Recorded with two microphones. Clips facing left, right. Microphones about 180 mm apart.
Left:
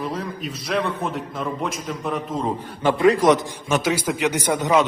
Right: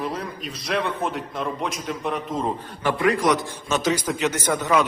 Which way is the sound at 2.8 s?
25° left (ahead or behind).